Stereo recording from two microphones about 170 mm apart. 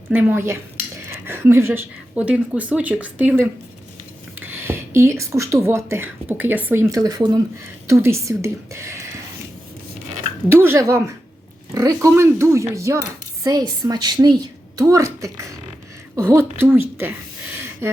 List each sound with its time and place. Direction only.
0.1 s a woman's voice: 10° right (ahead or behind)
10.5 s a woman's voice: 15° right (ahead or behind)